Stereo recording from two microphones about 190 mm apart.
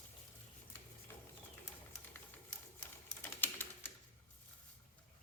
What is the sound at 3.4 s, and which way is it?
Typewriter, 10° left (ahead or behind).